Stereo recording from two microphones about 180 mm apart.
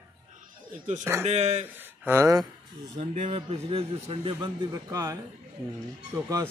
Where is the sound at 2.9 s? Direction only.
30° right (ahead or behind).